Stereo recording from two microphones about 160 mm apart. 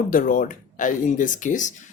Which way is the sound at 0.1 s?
60° left (ahead or behind).